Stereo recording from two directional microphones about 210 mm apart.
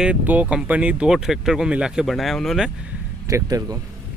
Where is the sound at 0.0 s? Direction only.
5° right (ahead or behind).